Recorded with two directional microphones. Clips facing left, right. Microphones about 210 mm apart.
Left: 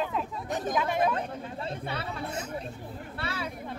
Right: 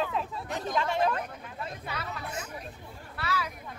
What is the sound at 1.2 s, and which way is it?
Chatter, 30° left (ahead or behind).